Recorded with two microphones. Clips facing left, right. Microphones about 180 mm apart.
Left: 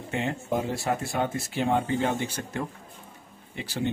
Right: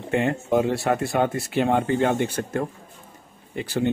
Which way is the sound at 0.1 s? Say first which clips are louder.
Right 7 dB; 60° right (ahead or behind).